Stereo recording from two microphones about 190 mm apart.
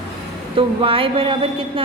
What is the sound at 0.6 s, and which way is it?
Speech, 30° right (ahead or behind).